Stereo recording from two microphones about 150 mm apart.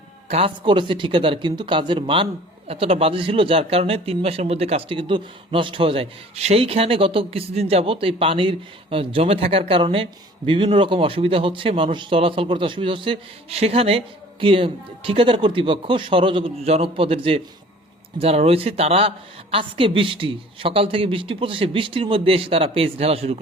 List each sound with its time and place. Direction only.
0.3 s a man's voice: 40° right (ahead or behind)